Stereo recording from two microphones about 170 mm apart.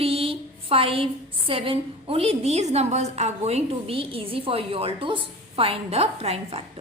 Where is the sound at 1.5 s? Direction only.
30° right (ahead or behind).